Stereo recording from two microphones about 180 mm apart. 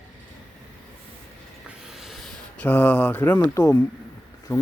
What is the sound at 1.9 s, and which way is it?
Speech, centre (ahead or behind).